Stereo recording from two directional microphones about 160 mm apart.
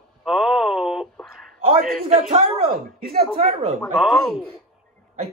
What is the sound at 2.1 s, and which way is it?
Speech, 50° right (ahead or behind).